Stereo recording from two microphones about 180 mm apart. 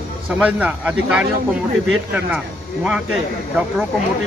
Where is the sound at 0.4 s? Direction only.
10° right (ahead or behind).